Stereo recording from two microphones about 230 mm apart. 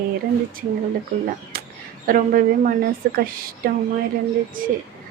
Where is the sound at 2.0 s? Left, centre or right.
Right.